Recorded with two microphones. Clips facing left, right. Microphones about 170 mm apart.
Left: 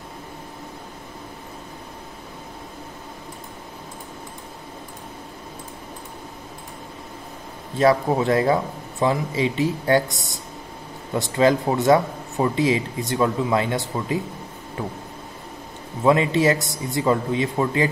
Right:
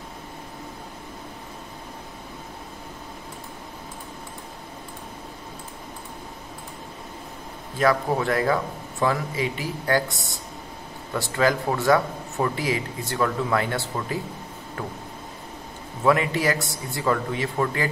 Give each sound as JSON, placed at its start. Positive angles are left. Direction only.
{"t": 7.7, "sound": "a man's voice", "side_deg": 25}
{"t": 16.0, "sound": "a man's voice", "side_deg": 25}